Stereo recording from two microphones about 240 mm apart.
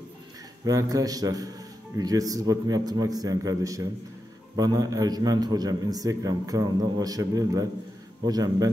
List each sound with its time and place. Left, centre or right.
0.7 s a man's voice: centre